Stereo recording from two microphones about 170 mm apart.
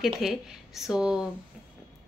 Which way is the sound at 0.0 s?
Centre (ahead or behind).